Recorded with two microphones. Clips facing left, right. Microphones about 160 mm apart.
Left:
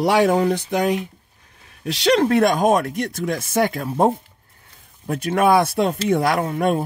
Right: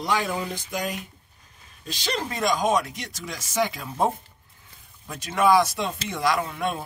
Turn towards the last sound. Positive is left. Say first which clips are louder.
# left 6 dB
turn(degrees=50)  # may be behind; listen again after turning